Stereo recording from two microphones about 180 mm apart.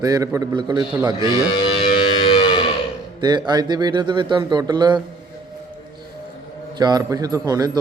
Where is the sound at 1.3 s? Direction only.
25° left (ahead or behind).